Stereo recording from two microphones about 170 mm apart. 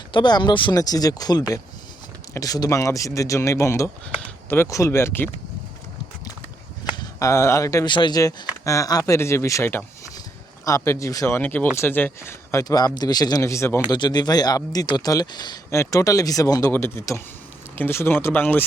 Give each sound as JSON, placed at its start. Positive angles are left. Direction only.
{"t": 0.1, "sound": "speech", "side_deg": 25}
{"t": 6.9, "sound": "speech", "side_deg": 20}